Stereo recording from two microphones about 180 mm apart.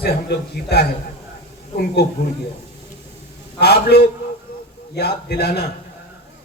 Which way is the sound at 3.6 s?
65° left (ahead or behind).